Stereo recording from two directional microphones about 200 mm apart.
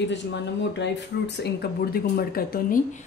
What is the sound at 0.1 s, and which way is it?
Speech, 60° left (ahead or behind).